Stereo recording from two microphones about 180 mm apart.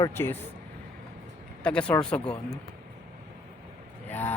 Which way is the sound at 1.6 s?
5° left (ahead or behind).